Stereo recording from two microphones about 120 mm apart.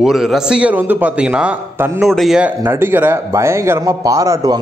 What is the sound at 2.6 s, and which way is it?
A man's voice, 20° right (ahead or behind).